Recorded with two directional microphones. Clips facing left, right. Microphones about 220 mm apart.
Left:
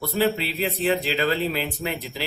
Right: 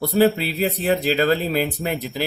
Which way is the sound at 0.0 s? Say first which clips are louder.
Right 6 dB; 40° right (ahead or behind).